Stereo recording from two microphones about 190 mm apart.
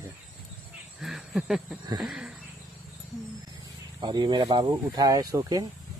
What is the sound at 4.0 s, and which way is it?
A man's voice, 20° right (ahead or behind).